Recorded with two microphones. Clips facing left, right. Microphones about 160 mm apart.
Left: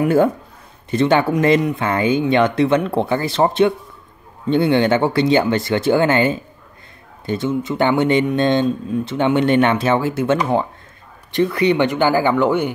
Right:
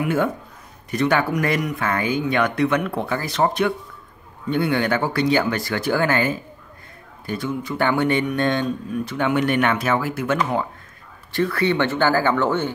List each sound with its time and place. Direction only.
0.0 s speech: 35° left (ahead or behind); by 12.7 s 15° left (ahead or behind)